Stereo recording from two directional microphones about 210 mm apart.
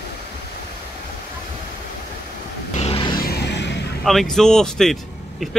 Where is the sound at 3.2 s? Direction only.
50° left (ahead or behind).